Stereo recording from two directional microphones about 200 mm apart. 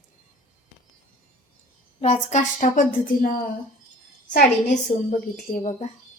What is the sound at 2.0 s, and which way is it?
Speech, 35° left (ahead or behind).